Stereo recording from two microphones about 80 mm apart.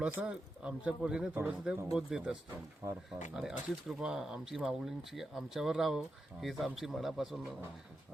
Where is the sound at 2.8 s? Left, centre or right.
Right.